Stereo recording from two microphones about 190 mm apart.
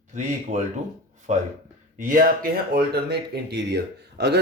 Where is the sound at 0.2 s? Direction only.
40° right (ahead or behind).